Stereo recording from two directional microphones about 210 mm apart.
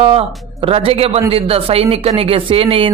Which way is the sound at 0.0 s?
25° right (ahead or behind).